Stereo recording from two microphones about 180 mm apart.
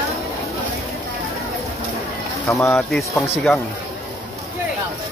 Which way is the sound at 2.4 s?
15° left (ahead or behind).